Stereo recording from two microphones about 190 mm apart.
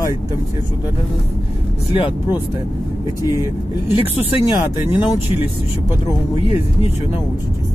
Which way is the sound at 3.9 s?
25° left (ahead or behind).